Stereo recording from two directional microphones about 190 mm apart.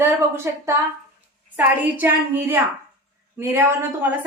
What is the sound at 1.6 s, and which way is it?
A woman's voice, 10° right (ahead or behind).